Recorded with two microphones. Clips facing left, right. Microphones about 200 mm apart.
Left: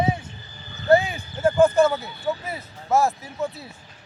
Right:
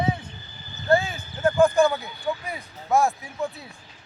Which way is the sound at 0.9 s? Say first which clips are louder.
Left 4 dB; 15° left (ahead or behind).